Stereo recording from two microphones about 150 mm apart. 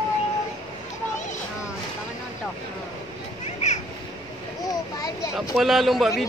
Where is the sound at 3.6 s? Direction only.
50° left (ahead or behind).